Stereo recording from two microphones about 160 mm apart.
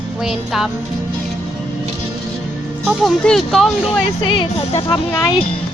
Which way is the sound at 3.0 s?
Centre (ahead or behind).